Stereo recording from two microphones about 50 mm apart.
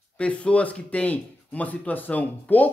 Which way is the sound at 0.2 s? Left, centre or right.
Left.